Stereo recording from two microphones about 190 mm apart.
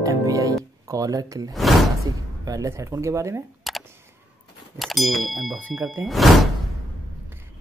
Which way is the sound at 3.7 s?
Centre (ahead or behind).